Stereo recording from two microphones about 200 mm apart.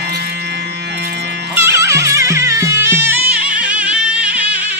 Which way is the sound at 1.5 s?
15° right (ahead or behind).